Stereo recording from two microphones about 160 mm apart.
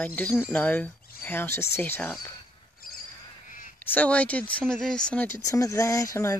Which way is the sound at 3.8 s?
10° left (ahead or behind).